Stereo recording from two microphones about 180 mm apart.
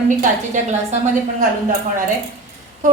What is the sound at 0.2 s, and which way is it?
Speech, 40° right (ahead or behind).